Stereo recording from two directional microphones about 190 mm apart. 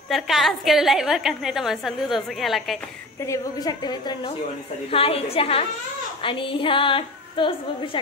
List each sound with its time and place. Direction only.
0.1 s a woman's voice: centre (ahead or behind)
3.3 s a woman's voice: 20° left (ahead or behind)